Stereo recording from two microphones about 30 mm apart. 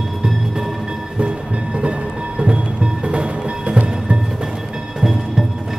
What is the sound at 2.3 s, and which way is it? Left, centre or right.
Music, right.